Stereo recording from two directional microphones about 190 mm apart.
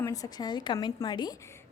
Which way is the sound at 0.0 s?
20° left (ahead or behind).